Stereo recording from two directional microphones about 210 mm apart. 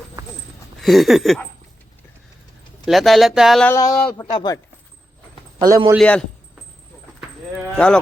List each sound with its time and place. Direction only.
0.8 s speech: centre (ahead or behind)
2.8 s speech: centre (ahead or behind)
3.8 s speech: 15° left (ahead or behind)
5.5 s a man's voice: 20° right (ahead or behind)
6.0 s speech: 5° left (ahead or behind)
7.8 s speech: 5° left (ahead or behind)